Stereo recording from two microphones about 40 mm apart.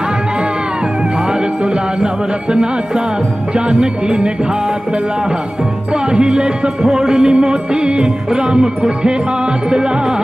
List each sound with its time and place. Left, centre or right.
1.3 s music: right
5.9 s music: right